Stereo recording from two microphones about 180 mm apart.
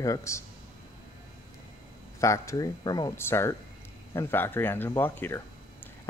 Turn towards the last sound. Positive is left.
turn(degrees=10)  # may be behind; listen again after turning